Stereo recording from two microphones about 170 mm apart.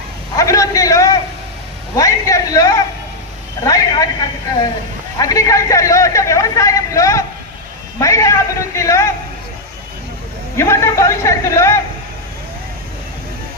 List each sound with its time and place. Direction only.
0.3 s a man's voice: 20° left (ahead or behind)
2.0 s a sound: 20° left (ahead or behind)
3.7 s a man's voice: 20° left (ahead or behind)
5.1 s a man's voice: 20° left (ahead or behind)
10.6 s a man's voice: 15° left (ahead or behind)